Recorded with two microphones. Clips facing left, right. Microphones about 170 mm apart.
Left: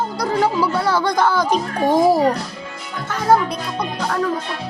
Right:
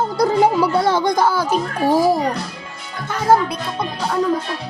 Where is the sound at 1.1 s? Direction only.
10° right (ahead or behind).